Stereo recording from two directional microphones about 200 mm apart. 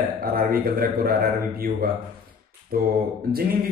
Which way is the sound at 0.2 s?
45° right (ahead or behind).